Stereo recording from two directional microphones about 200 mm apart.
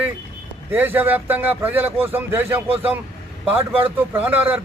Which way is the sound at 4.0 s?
10° right (ahead or behind).